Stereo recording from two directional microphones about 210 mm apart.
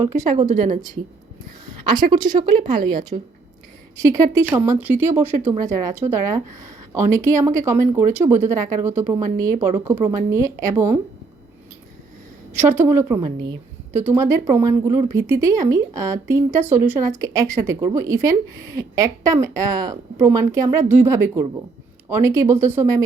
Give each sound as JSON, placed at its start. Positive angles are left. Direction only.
{"t": 0.3, "sound": "a woman's voice", "side_deg": -35}
{"t": 1.8, "sound": "a woman's voice", "side_deg": -20}
{"t": 4.2, "sound": "speech", "side_deg": -10}
{"t": 12.5, "sound": "speech", "side_deg": -10}